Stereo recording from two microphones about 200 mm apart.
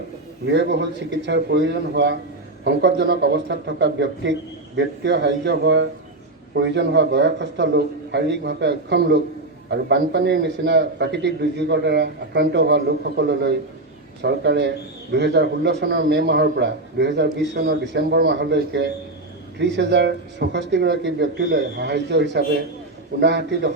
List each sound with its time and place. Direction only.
0.4 s a man's voice: 60° right (ahead or behind)